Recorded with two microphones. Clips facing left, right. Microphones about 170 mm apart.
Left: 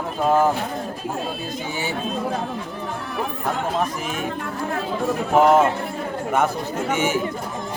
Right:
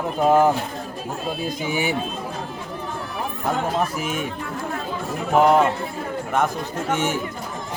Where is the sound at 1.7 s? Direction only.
15° right (ahead or behind).